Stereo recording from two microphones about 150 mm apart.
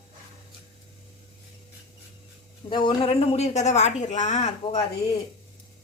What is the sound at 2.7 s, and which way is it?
Speech, 35° left (ahead or behind).